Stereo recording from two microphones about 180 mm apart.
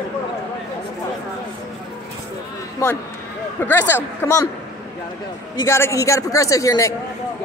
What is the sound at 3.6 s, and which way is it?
Speech, 10° left (ahead or behind).